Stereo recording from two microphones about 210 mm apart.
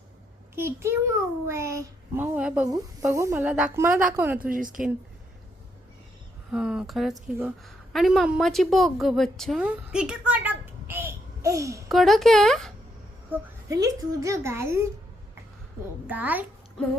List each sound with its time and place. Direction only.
0.5 s a child's voice: 10° right (ahead or behind)
4.4 s speech: 40° right (ahead or behind)
6.5 s a woman's voice: 5° right (ahead or behind)
11.9 s speech: centre (ahead or behind)
13.3 s a child's voice: 15° right (ahead or behind)
16.0 s a child's voice: 10° right (ahead or behind)